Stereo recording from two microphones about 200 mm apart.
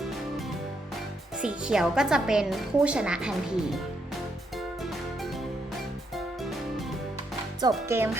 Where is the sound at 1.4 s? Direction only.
5° right (ahead or behind).